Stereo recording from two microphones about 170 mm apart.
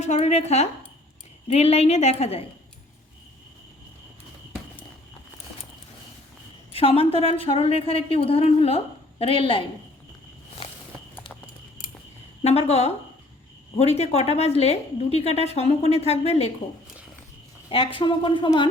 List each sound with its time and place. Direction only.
0.0 s a woman's voice: 40° left (ahead or behind)
6.7 s a woman's voice: 35° left (ahead or behind)
10.6 s walk: 35° left (ahead or behind)
12.4 s a woman's voice: 40° left (ahead or behind)
17.7 s a woman's voice: 30° left (ahead or behind)